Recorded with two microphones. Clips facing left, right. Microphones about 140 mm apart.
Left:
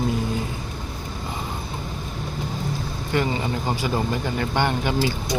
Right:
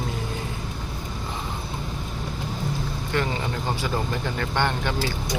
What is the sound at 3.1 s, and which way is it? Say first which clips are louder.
Speech: left 3 dB; 5° left (ahead or behind).